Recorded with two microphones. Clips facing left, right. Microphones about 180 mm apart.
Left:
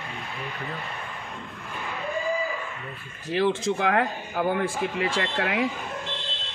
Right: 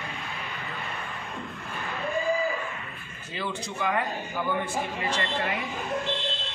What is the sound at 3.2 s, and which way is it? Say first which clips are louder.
Speech: left 10 dB; 90° left.